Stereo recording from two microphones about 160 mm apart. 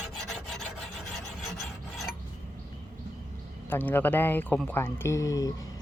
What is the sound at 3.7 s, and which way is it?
Speech, 10° left (ahead or behind).